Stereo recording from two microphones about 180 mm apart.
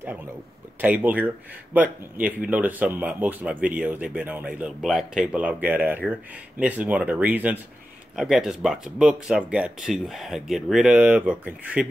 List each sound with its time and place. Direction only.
0.7 s speech: 10° right (ahead or behind)